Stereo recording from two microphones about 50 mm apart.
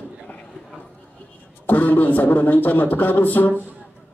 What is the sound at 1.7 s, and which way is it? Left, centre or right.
A man's voice, left.